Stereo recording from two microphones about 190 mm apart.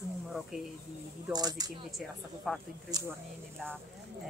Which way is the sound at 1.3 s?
20° right (ahead or behind).